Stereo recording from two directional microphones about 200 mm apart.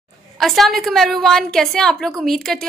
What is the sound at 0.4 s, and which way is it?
A woman's voice, centre (ahead or behind).